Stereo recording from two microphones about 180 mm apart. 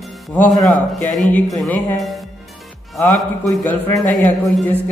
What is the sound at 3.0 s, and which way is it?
A man's voice, 15° left (ahead or behind).